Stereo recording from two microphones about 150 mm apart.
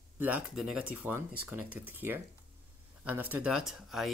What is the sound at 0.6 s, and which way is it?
Speech, 5° right (ahead or behind).